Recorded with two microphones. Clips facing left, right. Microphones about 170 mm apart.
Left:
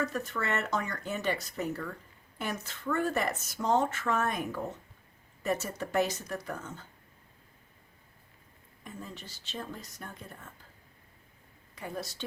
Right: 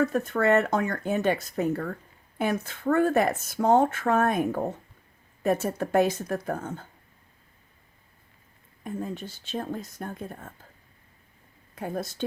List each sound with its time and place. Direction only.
0.0 s speech: 55° right (ahead or behind)
8.8 s speech: 55° right (ahead or behind)
11.7 s speech: 55° right (ahead or behind)